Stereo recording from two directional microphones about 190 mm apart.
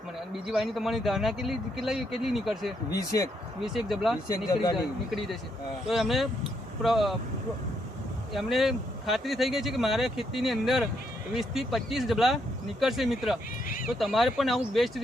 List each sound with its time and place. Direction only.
0.4 s speech: centre (ahead or behind)
2.9 s speech: 15° left (ahead or behind)
3.6 s speech: centre (ahead or behind)
5.9 s speech: centre (ahead or behind)
8.3 s speech: centre (ahead or behind)
13.7 s speech: 45° left (ahead or behind)
14.0 s speech: centre (ahead or behind)